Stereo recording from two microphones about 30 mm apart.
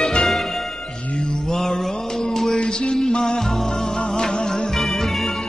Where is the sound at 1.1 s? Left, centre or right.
Left.